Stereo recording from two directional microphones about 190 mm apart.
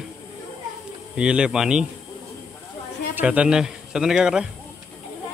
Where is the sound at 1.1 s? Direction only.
5° right (ahead or behind).